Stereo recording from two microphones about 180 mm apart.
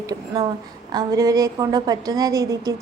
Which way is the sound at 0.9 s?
20° right (ahead or behind).